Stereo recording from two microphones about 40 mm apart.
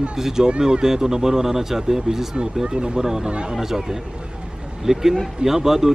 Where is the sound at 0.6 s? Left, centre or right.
Centre.